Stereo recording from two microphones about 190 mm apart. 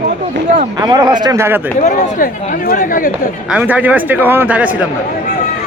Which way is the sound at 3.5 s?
5° right (ahead or behind).